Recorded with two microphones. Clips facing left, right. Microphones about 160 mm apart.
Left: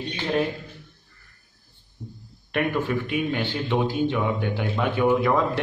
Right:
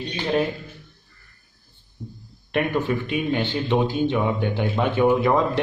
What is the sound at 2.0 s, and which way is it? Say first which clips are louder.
Speech: right 2 dB; 15° left (ahead or behind).